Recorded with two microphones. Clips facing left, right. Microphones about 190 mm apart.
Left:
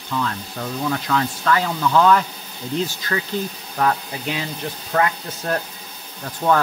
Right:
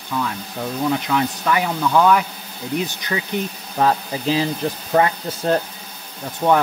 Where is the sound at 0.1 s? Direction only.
10° right (ahead or behind); by 5.6 s 30° right (ahead or behind).